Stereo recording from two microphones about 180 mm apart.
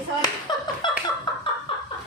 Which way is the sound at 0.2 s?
25° left (ahead or behind).